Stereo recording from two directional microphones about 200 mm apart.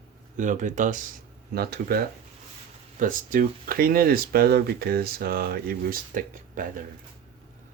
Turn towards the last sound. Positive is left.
turn(degrees=-40)  # may be behind; listen again after turning